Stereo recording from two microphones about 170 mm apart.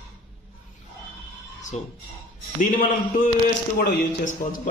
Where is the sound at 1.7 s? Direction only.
40° left (ahead or behind).